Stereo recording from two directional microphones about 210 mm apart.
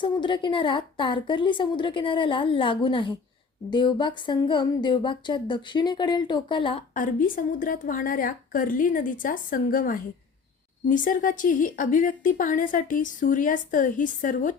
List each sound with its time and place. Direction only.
0.0 s a woman's voice: 20° left (ahead or behind)
6.9 s a woman's voice: 40° left (ahead or behind)